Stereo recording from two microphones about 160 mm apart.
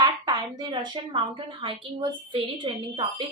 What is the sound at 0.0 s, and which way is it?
A woman's voice, 25° right (ahead or behind).